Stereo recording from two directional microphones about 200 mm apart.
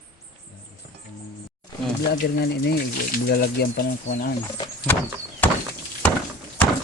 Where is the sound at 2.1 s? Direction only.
55° left (ahead or behind).